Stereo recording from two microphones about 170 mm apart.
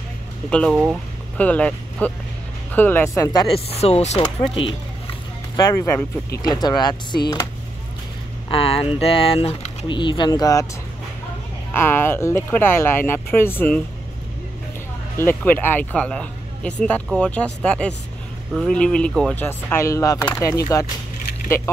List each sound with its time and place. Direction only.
0.5 s speech: 5° left (ahead or behind)
3.3 s speech: 35° left (ahead or behind)
4.2 s speech: 25° left (ahead or behind)
5.7 s speech: 15° left (ahead or behind)
8.5 s speech: 35° left (ahead or behind)
11.7 s speech: 15° left (ahead or behind)
15.1 s speech: 10° left (ahead or behind)